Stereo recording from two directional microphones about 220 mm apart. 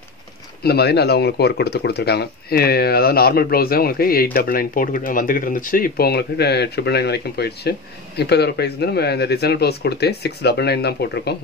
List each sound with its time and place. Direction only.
0.7 s speech: 45° left (ahead or behind)